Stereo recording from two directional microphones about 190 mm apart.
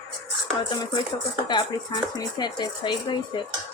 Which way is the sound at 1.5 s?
25° left (ahead or behind).